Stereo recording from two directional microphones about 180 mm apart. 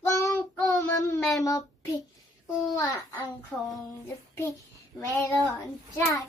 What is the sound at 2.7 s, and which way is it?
Speech, 20° left (ahead or behind).